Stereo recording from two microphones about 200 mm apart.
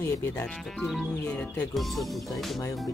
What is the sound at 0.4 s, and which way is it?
Speech, centre (ahead or behind).